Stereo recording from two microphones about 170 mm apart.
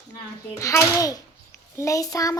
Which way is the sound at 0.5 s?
20° left (ahead or behind).